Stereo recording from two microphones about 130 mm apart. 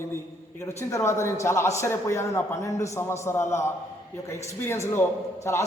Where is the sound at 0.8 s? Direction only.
20° left (ahead or behind).